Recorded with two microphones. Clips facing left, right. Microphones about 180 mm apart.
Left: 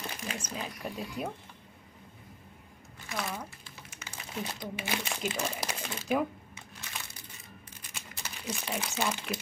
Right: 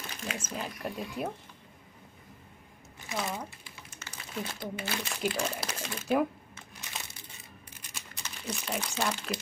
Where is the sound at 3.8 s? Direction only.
5° left (ahead or behind).